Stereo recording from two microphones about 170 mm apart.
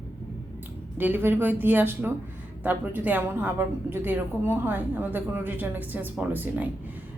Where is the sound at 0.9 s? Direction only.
10° right (ahead or behind).